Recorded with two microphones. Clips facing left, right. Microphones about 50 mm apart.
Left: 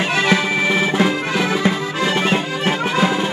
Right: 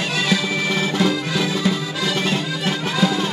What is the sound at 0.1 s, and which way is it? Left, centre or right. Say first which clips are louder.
Music: left 4 dB; left.